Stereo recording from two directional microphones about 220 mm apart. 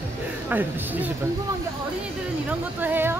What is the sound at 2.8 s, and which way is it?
Speech, 10° right (ahead or behind).